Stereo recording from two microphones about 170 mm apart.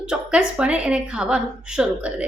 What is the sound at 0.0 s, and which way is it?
A woman's voice, 5° right (ahead or behind).